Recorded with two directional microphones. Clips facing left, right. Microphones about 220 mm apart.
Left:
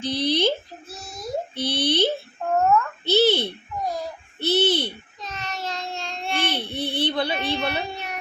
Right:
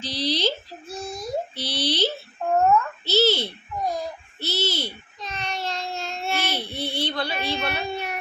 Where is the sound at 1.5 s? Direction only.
55° left (ahead or behind).